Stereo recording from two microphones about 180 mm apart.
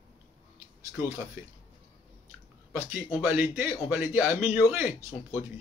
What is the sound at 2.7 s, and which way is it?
A man's voice, 10° right (ahead or behind).